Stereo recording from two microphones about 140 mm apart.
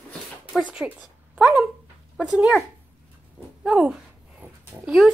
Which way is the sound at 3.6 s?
10° right (ahead or behind).